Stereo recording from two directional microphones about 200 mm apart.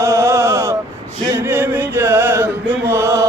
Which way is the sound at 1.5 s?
10° right (ahead or behind).